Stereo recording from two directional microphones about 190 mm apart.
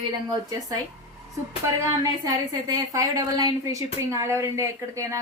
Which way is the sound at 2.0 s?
20° right (ahead or behind).